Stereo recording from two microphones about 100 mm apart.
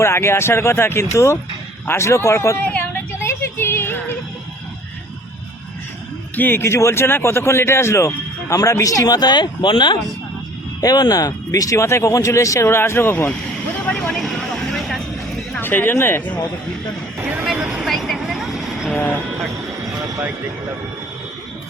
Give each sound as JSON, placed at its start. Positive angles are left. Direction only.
{"t": 0.0, "sound": "speech", "side_deg": 25}
{"t": 2.6, "sound": "a sound", "side_deg": 20}
{"t": 6.3, "sound": "speech", "side_deg": 20}
{"t": 10.8, "sound": "speech", "side_deg": 40}
{"t": 13.9, "sound": "vehicle", "side_deg": 5}
{"t": 15.6, "sound": "speech", "side_deg": 20}
{"t": 17.2, "sound": "speech", "side_deg": -15}
{"t": 17.4, "sound": "vehicle", "side_deg": -5}